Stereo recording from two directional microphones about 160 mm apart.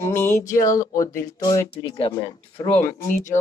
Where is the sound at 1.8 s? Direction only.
30° left (ahead or behind).